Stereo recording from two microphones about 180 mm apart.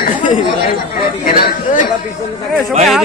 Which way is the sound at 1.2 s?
45° left (ahead or behind).